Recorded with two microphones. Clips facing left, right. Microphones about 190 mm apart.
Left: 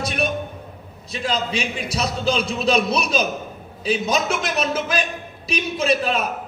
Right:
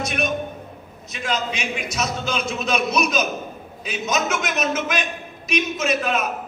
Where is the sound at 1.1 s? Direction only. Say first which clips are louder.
Left 2 dB; 30° left (ahead or behind).